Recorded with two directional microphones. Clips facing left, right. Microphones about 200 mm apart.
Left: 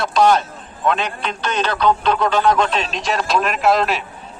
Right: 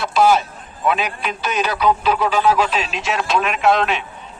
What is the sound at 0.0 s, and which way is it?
A man's voice, 5° right (ahead or behind).